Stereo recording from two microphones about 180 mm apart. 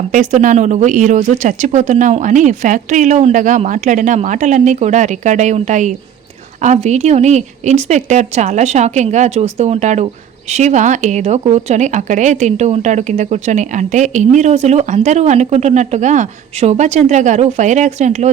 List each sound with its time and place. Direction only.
0.1 s a woman's voice: 40° right (ahead or behind)